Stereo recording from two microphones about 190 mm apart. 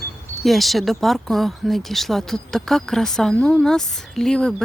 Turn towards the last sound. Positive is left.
turn(degrees=5)  # may be behind; listen again after turning